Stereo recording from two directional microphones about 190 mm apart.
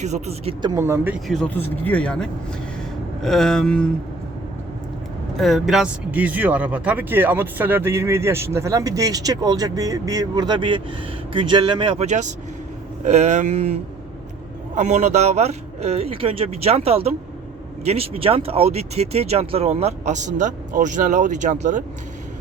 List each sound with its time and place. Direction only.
0.0 s speech: 35° right (ahead or behind)
0.7 s speech: 15° right (ahead or behind)
1.3 s speech: 5° left (ahead or behind)
3.2 s a sound: centre (ahead or behind)
5.4 s speech: centre (ahead or behind); by 13.7 s 35° right (ahead or behind)
14.8 s speech: 35° right (ahead or behind)